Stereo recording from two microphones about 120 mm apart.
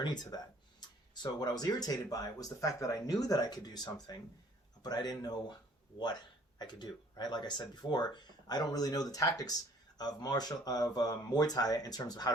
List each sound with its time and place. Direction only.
0.0 s speech: 35° left (ahead or behind)